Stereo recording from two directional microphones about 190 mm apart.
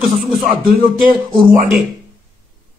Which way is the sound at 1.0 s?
45° right (ahead or behind).